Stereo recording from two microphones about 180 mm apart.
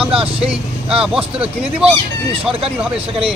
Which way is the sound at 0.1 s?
30° right (ahead or behind).